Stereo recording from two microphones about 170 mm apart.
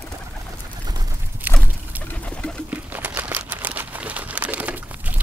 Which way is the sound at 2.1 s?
10° left (ahead or behind).